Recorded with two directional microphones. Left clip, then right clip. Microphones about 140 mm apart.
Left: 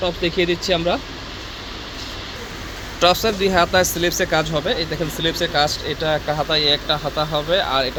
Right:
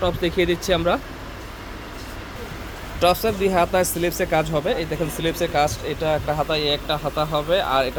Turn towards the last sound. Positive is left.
turn(degrees=0)  # may be behind; listen again after turning